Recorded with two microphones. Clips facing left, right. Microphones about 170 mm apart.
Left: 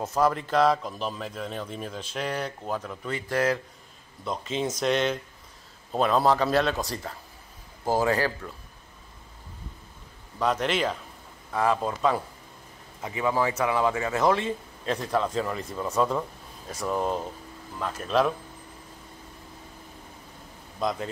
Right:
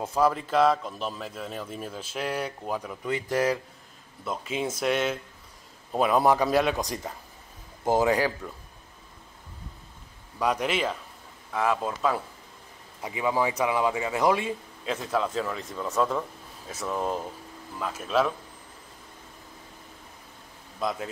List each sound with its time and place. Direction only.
0.0 s a man's voice: 10° right (ahead or behind)
4.2 s a man's voice: 5° right (ahead or behind)
10.4 s a man's voice: 10° right (ahead or behind)
13.0 s a man's voice: 15° right (ahead or behind)
20.8 s speech: centre (ahead or behind)